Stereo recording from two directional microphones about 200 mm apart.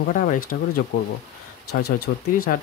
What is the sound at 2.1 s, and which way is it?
Speech, 55° left (ahead or behind).